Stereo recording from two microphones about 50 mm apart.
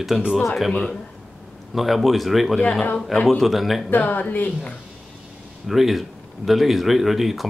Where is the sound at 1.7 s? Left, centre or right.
Centre.